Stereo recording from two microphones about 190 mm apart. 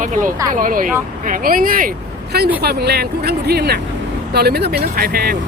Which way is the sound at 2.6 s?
60° right (ahead or behind).